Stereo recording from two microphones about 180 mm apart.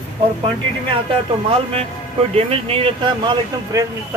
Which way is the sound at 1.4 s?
30° right (ahead or behind).